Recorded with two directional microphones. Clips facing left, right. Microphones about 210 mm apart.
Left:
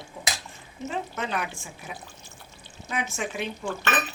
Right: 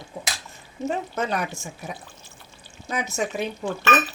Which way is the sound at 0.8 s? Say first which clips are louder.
Right 5 dB; 40° right (ahead or behind).